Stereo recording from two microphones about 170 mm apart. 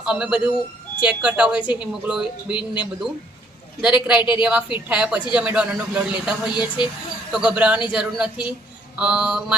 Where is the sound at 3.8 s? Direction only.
5° right (ahead or behind).